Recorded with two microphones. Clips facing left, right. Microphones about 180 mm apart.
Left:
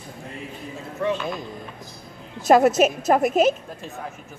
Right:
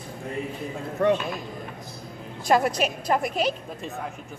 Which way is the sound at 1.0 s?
60° right (ahead or behind).